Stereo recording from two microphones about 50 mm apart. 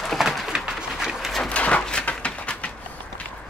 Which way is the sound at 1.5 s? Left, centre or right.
Left.